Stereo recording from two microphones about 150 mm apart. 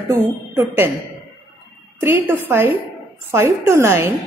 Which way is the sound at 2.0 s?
15° right (ahead or behind).